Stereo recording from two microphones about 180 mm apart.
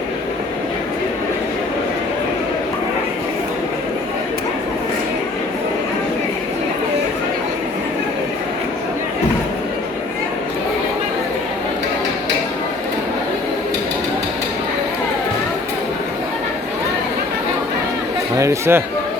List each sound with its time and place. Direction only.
18.3 s chatter: 15° right (ahead or behind)